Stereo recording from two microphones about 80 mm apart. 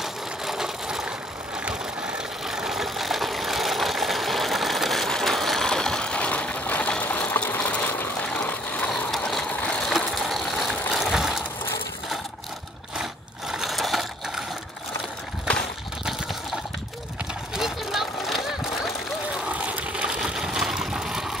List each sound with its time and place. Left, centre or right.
0.0 s ratchet: centre
1.6 s vehicle: centre
9.1 s ratchet: centre
9.5 s ratchet: centre
9.8 s ratchet: centre
12.9 s a sound: centre
17.6 s a sound: centre
19.5 s sewing machine: centre